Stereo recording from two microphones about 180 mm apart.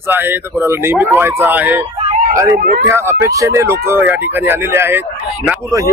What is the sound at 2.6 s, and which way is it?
Speech, 55° right (ahead or behind).